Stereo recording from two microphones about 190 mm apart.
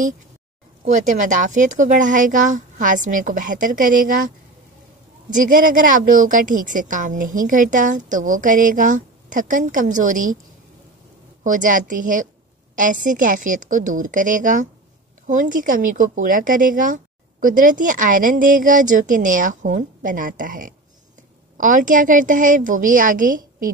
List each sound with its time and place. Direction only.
0.8 s speech: 40° right (ahead or behind)
5.3 s speech: 45° right (ahead or behind)
11.4 s speech: 45° right (ahead or behind)